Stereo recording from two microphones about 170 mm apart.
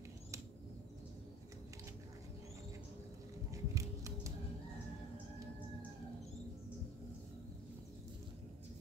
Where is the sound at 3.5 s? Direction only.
20° right (ahead or behind).